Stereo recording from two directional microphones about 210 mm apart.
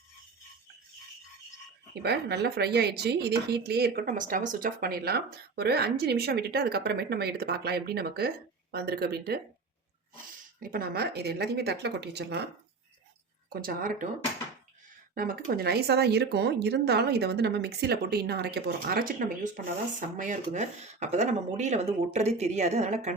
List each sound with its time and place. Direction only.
2.0 s speech: 50° right (ahead or behind)
10.6 s speech: 45° right (ahead or behind)
13.5 s speech: 45° right (ahead or behind)
15.1 s speech: 40° right (ahead or behind)